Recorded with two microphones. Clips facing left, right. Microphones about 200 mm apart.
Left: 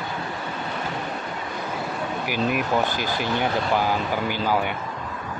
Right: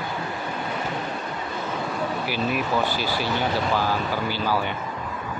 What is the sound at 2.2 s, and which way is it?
Speech, 15° left (ahead or behind).